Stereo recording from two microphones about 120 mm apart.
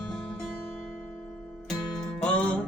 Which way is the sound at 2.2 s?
10° left (ahead or behind).